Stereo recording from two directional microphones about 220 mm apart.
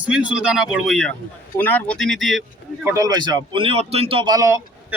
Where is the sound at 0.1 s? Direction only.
5° right (ahead or behind).